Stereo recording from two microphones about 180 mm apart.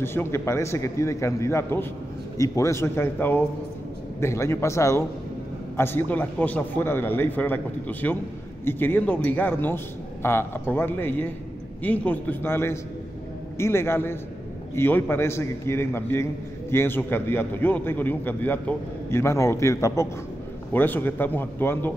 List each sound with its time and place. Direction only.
0.0 s a man's voice: 15° left (ahead or behind)